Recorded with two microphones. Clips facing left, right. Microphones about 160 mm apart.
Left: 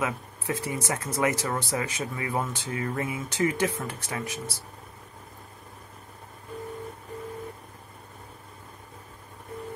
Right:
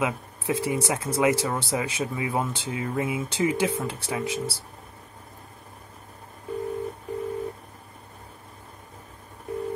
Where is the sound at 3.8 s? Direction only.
30° right (ahead or behind).